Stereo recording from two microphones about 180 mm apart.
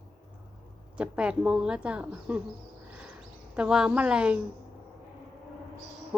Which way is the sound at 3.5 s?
5° right (ahead or behind).